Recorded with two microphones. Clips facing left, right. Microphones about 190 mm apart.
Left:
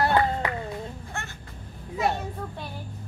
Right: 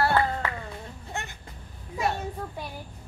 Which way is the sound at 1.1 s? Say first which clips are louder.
Right 2 dB; 20° right (ahead or behind).